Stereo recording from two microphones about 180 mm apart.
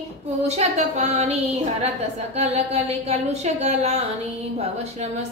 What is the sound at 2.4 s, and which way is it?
A woman's voice, 35° right (ahead or behind).